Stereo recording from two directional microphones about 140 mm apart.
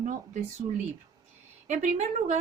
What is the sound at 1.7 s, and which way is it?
Speech, 60° right (ahead or behind).